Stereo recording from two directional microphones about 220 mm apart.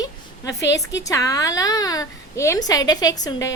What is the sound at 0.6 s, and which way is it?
Speech, 55° left (ahead or behind).